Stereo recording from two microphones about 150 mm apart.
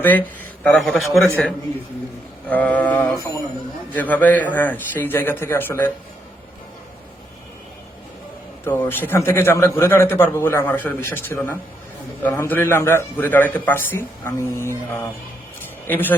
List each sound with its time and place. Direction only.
0.0 s speech: 10° left (ahead or behind)
2.5 s a man's voice: 10° left (ahead or behind)
8.6 s a man's voice: 15° left (ahead or behind)